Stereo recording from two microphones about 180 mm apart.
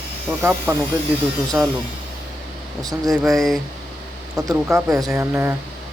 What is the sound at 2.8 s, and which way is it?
Speech, 20° right (ahead or behind).